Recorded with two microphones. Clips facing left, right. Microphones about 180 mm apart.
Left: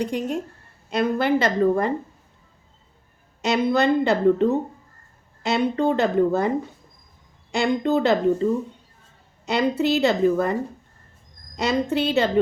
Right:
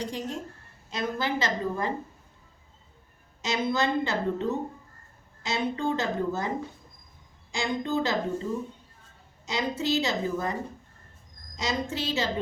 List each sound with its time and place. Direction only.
0.0 s a woman's voice: 60° left (ahead or behind)
3.4 s a woman's voice: 60° left (ahead or behind)
7.5 s a woman's voice: 65° left (ahead or behind)
9.5 s a woman's voice: 60° left (ahead or behind)
11.5 s a woman's voice: 60° left (ahead or behind)